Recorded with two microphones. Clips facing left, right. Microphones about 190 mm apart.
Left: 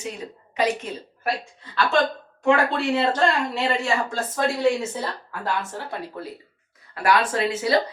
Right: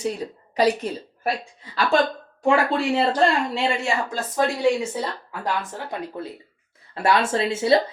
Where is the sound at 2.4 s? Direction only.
35° right (ahead or behind).